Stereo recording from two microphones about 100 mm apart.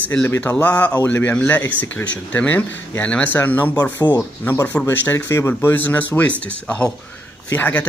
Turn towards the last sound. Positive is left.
turn(degrees=20)  # may be behind; listen again after turning